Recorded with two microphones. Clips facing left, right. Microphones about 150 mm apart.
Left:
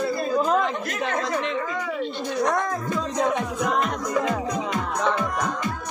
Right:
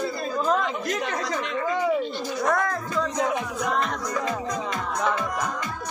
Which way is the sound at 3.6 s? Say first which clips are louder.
Left 2 dB; centre (ahead or behind).